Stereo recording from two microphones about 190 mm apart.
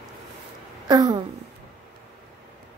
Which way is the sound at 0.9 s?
20° right (ahead or behind).